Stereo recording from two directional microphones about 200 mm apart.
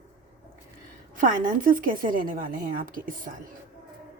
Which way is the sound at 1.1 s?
40° right (ahead or behind).